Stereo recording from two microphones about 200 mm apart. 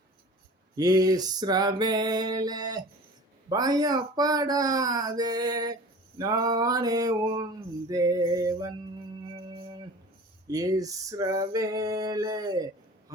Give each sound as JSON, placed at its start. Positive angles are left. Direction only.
{"t": 0.8, "sound": "speech", "side_deg": -20}
{"t": 7.9, "sound": "male singing", "side_deg": -15}
{"t": 9.3, "sound": "music", "side_deg": -25}
{"t": 10.5, "sound": "male singing", "side_deg": -20}
{"t": 13.1, "sound": "a sound", "side_deg": -15}